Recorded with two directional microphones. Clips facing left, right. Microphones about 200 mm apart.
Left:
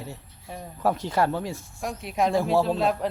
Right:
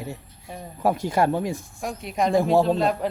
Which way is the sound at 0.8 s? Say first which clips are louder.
Right 2 dB; 10° right (ahead or behind).